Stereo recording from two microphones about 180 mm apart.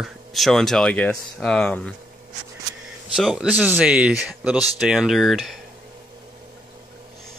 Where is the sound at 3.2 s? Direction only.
5° right (ahead or behind).